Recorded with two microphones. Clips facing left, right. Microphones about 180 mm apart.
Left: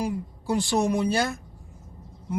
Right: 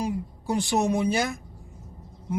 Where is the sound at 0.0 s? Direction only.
20° right (ahead or behind).